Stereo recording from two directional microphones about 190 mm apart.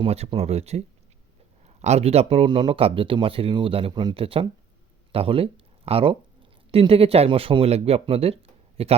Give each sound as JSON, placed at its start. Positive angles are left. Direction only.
{"t": 0.0, "sound": "speech", "side_deg": -30}